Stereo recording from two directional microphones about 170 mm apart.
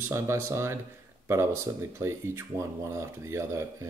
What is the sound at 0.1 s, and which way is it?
Speech, 15° right (ahead or behind).